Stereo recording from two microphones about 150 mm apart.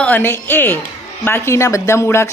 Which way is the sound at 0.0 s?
10° left (ahead or behind).